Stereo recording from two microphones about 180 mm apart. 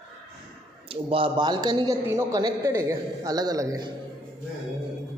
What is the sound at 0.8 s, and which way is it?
A man's voice, 30° right (ahead or behind).